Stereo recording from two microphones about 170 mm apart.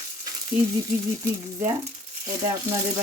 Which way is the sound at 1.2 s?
20° right (ahead or behind).